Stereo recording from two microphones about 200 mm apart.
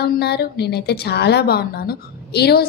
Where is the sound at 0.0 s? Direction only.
55° left (ahead or behind).